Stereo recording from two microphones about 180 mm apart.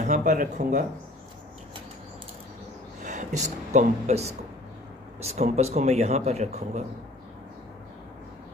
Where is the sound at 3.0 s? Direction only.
40° right (ahead or behind).